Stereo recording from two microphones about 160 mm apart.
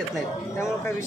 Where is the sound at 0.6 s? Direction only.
15° left (ahead or behind).